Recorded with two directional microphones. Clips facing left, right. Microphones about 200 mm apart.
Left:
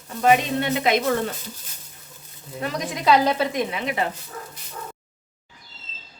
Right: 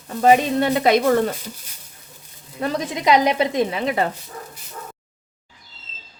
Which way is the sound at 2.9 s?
15° right (ahead or behind).